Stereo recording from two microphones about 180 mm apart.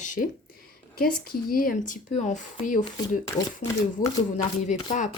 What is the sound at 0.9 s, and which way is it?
Speech, 55° left (ahead or behind).